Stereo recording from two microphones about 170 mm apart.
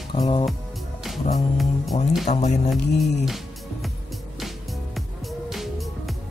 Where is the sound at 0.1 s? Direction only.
30° left (ahead or behind).